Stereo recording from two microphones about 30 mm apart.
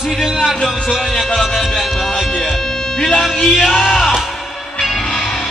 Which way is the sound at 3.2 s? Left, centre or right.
Centre.